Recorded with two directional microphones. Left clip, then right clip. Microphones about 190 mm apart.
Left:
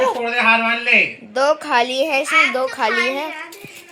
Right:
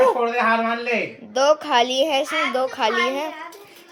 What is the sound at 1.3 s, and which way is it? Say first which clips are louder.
A woman's voice: even; 5° left (ahead or behind).